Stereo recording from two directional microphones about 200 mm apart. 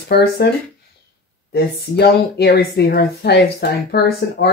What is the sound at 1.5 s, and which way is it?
Speech, 55° left (ahead or behind).